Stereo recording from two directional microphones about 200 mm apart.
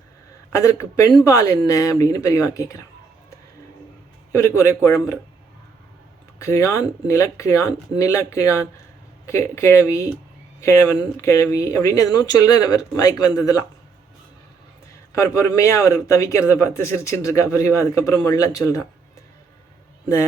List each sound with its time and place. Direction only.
0.5 s speech: 15° left (ahead or behind)
4.3 s speech: 15° left (ahead or behind)
6.4 s speech: 15° left (ahead or behind)
11.2 s speech: 15° left (ahead or behind)
15.1 s speech: 15° left (ahead or behind)